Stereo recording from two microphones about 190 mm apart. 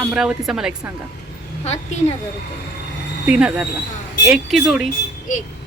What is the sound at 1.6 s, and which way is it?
Speech, 35° left (ahead or behind).